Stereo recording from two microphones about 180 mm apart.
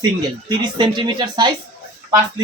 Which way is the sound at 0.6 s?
25° right (ahead or behind).